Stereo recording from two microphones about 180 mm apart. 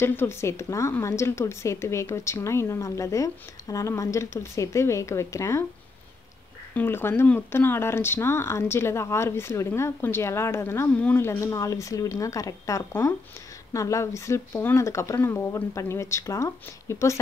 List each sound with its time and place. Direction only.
0.0 s speech: 10° left (ahead or behind)
6.7 s speech: 10° left (ahead or behind)